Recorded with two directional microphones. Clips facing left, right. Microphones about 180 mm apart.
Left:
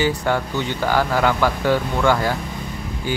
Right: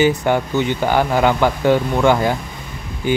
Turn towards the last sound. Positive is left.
turn(degrees=-20)  # may be behind; listen again after turning